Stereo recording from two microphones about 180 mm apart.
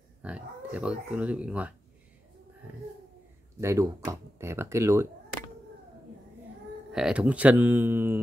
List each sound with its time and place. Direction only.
0.2 s speech: 5° right (ahead or behind)
3.6 s speech: 15° right (ahead or behind)
6.9 s speech: 5° right (ahead or behind)